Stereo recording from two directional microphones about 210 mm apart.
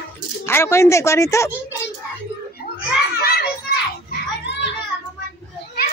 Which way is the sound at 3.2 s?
45° left (ahead or behind).